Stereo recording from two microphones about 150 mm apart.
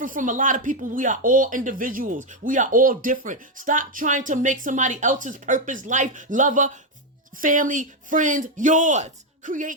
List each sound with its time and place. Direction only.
0.0 s speech: 60° right (ahead or behind)